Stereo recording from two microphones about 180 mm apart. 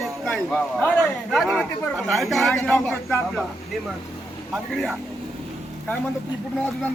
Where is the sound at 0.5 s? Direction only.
10° left (ahead or behind).